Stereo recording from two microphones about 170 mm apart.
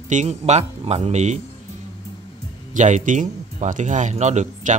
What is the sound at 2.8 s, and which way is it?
Speech, 45° right (ahead or behind).